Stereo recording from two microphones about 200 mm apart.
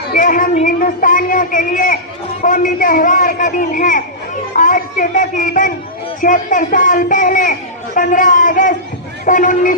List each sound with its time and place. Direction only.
0.1 s a woman's voice: 40° left (ahead or behind)